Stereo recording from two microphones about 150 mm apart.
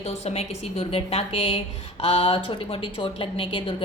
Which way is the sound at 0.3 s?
40° left (ahead or behind).